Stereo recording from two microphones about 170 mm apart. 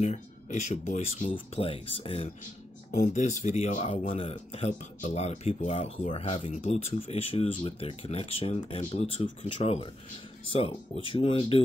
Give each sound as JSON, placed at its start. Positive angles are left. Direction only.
{"t": 0.0, "sound": "speech", "side_deg": 40}
{"t": 2.9, "sound": "speech", "side_deg": 50}